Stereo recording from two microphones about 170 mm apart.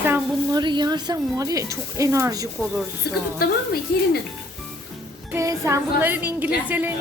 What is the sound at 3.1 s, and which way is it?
Speech, 70° left (ahead or behind).